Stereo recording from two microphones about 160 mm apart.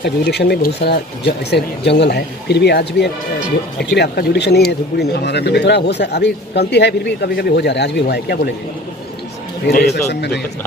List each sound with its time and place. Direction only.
0.0 s speech: 90° left
9.6 s speech: 90° left